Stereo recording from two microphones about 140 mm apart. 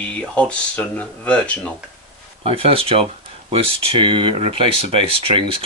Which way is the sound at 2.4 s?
40° right (ahead or behind).